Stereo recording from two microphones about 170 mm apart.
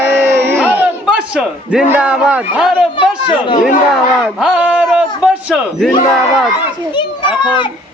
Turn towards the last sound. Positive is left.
turn(degrees=30)  # may be behind; listen again after turning